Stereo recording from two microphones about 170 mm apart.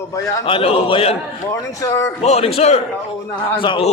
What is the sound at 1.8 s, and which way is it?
Speech, 20° left (ahead or behind).